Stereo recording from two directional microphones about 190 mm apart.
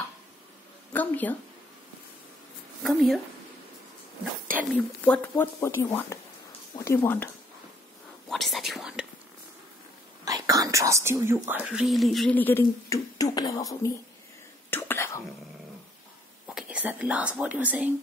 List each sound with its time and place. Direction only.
0.9 s speech: 10° left (ahead or behind)
2.8 s speech: centre (ahead or behind)
4.7 s speech: 10° left (ahead or behind)
8.3 s speech: centre (ahead or behind)
10.2 s speech: 20° right (ahead or behind); by 13.9 s 20° left (ahead or behind)
14.7 s whispering: 10° left (ahead or behind)
16.4 s speech: 5° right (ahead or behind)